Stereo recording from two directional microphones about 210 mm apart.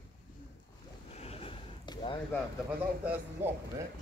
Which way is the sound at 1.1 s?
30° left (ahead or behind).